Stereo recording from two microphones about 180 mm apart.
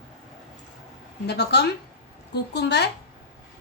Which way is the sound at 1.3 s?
70° left (ahead or behind).